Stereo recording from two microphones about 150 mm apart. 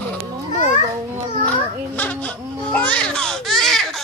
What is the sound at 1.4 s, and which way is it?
Babbling, 10° left (ahead or behind).